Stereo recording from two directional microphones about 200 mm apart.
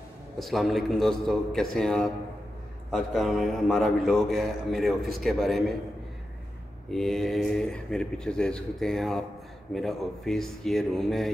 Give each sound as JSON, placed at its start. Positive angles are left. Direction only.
{"t": 0.4, "sound": "a man's voice", "side_deg": 0}
{"t": 6.9, "sound": "a man's voice", "side_deg": 0}